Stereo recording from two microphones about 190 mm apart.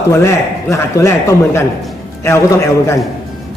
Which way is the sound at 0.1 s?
15° left (ahead or behind).